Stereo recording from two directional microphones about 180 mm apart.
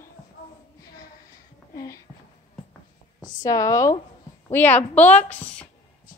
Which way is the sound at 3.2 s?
20° left (ahead or behind).